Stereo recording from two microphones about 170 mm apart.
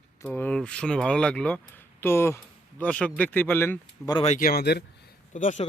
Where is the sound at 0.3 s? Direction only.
5° left (ahead or behind).